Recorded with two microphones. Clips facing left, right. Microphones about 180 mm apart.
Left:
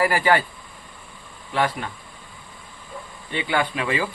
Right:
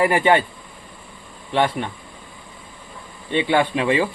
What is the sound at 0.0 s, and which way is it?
Speech, 20° right (ahead or behind).